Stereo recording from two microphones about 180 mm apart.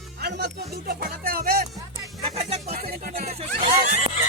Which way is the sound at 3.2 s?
35° right (ahead or behind).